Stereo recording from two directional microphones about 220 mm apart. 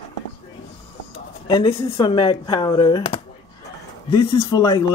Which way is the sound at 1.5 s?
25° left (ahead or behind).